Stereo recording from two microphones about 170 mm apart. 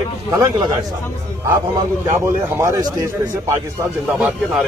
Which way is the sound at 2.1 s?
15° right (ahead or behind).